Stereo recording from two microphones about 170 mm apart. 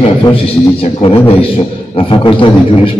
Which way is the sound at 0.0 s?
35° left (ahead or behind).